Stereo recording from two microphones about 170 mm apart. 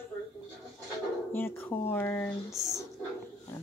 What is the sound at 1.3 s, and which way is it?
Speech, 10° left (ahead or behind).